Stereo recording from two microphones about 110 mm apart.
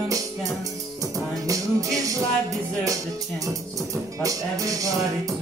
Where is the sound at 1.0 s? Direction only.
30° right (ahead or behind).